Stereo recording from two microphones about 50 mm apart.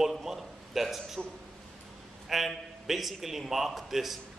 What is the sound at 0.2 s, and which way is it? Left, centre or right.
A man's voice, centre.